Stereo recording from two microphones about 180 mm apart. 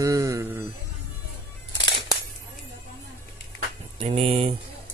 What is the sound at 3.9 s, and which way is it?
Speech, 35° right (ahead or behind).